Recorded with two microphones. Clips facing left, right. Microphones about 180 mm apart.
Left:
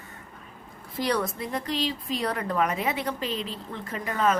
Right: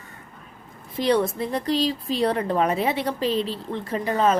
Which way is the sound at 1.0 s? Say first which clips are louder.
Right 6 dB; 25° right (ahead or behind).